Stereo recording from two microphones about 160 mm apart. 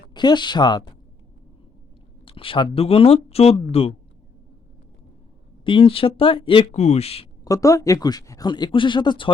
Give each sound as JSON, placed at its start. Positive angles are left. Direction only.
{"t": 0.1, "sound": "speech", "side_deg": 25}
{"t": 2.2, "sound": "speech", "side_deg": 35}
{"t": 5.6, "sound": "speech", "side_deg": 35}
{"t": 6.7, "sound": "speech", "side_deg": 45}
{"t": 7.4, "sound": "speech", "side_deg": 20}